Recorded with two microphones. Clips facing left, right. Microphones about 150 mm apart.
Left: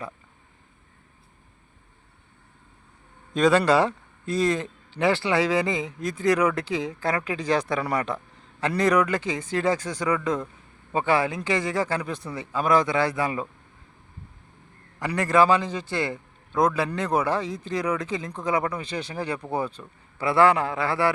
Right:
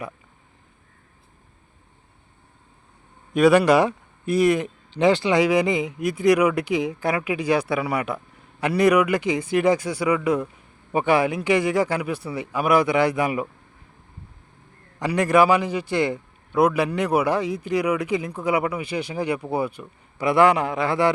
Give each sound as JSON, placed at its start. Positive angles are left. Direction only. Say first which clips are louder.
{"t": 3.3, "sound": "a man's voice", "louder": "right 4 dB", "side_deg": -10}
{"t": 14.9, "sound": "a man's voice", "louder": "right 3 dB", "side_deg": -15}